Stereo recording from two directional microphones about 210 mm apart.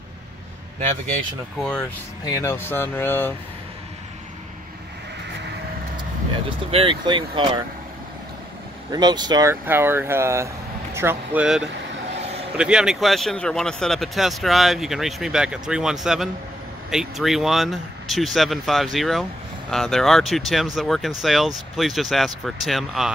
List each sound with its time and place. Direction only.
1.6 s speech: 5° left (ahead or behind)
6.7 s speech: 25° right (ahead or behind)
8.9 s speech: 20° right (ahead or behind); by 23.1 s centre (ahead or behind)